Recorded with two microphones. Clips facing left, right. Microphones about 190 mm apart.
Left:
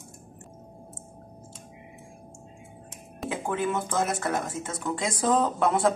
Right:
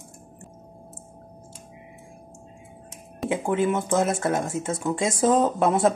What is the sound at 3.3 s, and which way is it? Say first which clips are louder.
Speech: right 5 dB; 25° right (ahead or behind).